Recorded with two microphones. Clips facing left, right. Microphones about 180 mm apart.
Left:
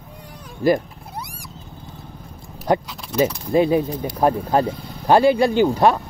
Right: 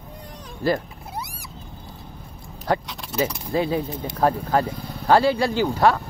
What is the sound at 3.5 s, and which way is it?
Speech, 20° left (ahead or behind).